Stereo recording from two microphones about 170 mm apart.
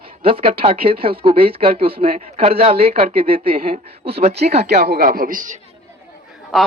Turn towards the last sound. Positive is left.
turn(degrees=0)  # may be behind; listen again after turning